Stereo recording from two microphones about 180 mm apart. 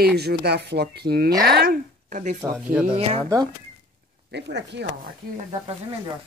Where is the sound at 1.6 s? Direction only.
50° right (ahead or behind).